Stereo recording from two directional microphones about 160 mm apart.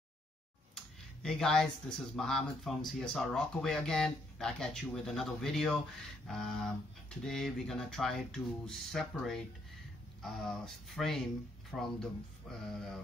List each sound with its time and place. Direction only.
0.7 s speech: 5° left (ahead or behind)